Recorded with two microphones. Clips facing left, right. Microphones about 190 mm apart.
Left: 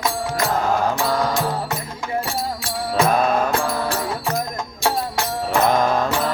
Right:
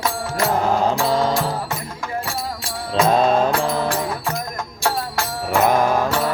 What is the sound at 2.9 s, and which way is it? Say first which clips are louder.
Music: right 2 dB; 25° right (ahead or behind).